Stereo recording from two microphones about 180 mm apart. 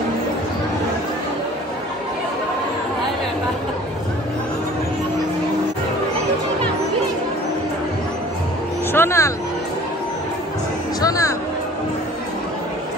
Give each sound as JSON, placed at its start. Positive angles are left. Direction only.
{"t": 8.9, "sound": "vehicle", "side_deg": 15}
{"t": 11.0, "sound": "music", "side_deg": 20}